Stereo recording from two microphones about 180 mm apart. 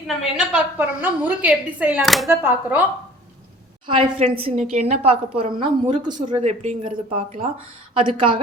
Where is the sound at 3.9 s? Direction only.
35° right (ahead or behind).